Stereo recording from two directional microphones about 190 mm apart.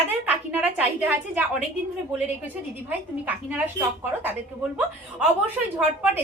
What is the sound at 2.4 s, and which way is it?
Speech, 10° right (ahead or behind).